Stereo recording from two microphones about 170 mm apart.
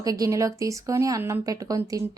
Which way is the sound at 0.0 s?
20° right (ahead or behind).